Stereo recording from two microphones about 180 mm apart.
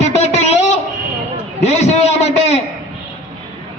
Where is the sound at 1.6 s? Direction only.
40° left (ahead or behind).